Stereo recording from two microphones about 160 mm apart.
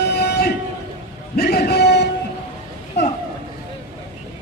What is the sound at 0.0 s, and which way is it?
Train, 90° left.